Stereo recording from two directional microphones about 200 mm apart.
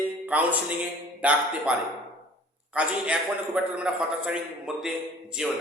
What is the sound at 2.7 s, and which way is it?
A man's voice, 5° right (ahead or behind).